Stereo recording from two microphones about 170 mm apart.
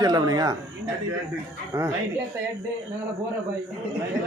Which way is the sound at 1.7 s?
20° right (ahead or behind).